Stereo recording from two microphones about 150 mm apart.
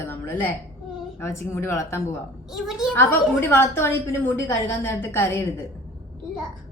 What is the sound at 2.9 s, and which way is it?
A woman's voice, 15° left (ahead or behind).